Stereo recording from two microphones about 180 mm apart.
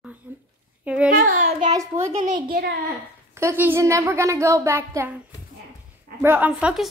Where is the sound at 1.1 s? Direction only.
45° right (ahead or behind).